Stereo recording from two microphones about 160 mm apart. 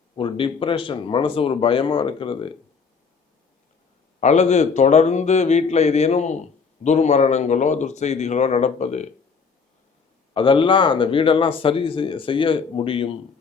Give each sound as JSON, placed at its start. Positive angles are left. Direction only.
{"t": 0.2, "sound": "speech", "side_deg": 30}
{"t": 4.2, "sound": "a man's voice", "side_deg": 45}
{"t": 10.3, "sound": "speech", "side_deg": 30}